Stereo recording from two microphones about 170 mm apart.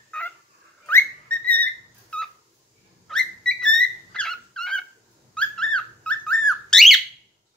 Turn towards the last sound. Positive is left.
turn(degrees=0)  # may be behind; listen again after turning